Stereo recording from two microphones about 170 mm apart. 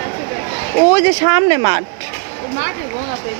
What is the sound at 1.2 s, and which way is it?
Speech, 25° right (ahead or behind).